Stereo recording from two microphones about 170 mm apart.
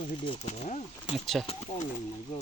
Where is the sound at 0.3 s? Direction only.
40° left (ahead or behind).